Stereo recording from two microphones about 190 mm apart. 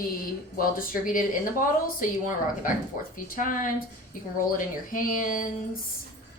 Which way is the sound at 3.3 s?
45° left (ahead or behind).